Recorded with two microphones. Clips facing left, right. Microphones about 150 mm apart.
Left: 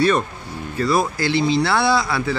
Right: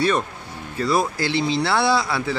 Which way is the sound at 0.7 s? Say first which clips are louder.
Left 1 dB; 20° right (ahead or behind).